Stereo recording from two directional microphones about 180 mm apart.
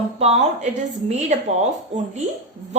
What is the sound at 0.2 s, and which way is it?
Speech, 35° right (ahead or behind).